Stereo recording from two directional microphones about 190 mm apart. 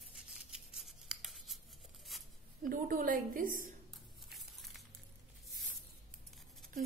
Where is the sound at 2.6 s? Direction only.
45° right (ahead or behind).